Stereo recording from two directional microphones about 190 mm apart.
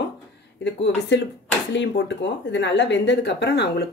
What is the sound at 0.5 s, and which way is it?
Speech, 65° left (ahead or behind).